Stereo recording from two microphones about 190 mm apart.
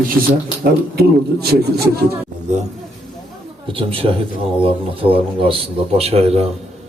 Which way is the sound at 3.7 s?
30° right (ahead or behind).